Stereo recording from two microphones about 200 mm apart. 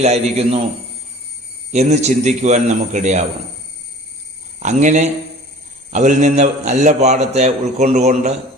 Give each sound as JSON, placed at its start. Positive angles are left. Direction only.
{"t": 0.0, "sound": "a man's voice", "side_deg": -30}
{"t": 1.7, "sound": "a man's voice", "side_deg": -35}
{"t": 4.6, "sound": "a man's voice", "side_deg": -35}